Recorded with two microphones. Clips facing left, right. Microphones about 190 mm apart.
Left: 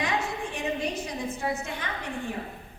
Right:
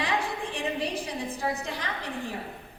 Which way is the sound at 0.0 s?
30° right (ahead or behind).